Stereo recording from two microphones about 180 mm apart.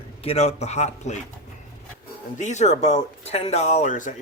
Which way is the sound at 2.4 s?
40° left (ahead or behind).